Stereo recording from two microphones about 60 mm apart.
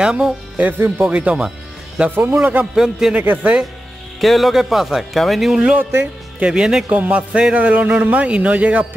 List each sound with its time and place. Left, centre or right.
0.0 s speech: centre
0.7 s speech: right
1.0 s music: right
2.0 s speech: right
2.6 s a man's voice: centre
3.2 s music: right
4.2 s speech: centre
6.4 s a man's voice: centre
6.9 s music: right